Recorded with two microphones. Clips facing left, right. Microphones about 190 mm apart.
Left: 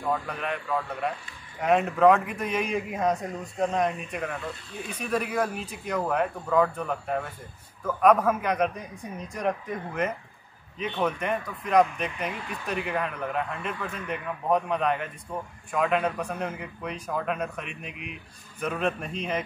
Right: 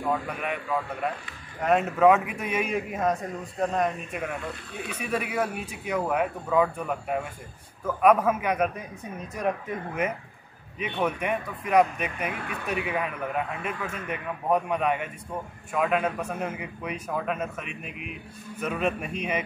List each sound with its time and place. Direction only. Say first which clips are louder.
0.0 s a man's voice: right 1 dB; 5° right (ahead or behind)
12.3 s speech: right 1 dB; 60° right (ahead or behind)
12.8 s a man's voice: even; 5° right (ahead or behind)